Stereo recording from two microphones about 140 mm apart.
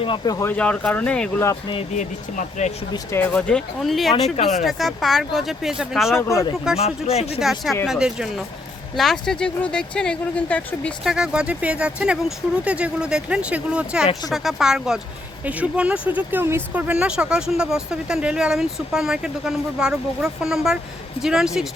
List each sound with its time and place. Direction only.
0.3 s speech: 20° left (ahead or behind)
0.5 s speech: 10° left (ahead or behind)
2.0 s speech: 60° left (ahead or behind)
3.1 s speech: 10° left (ahead or behind)
6.1 s speech: 20° left (ahead or behind)
6.7 s speech: 45° left (ahead or behind)
7.3 s speech: 5° right (ahead or behind)
11.0 s speech: 5° right (ahead or behind)